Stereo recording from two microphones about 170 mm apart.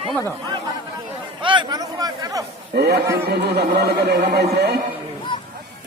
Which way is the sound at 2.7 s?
75° right (ahead or behind).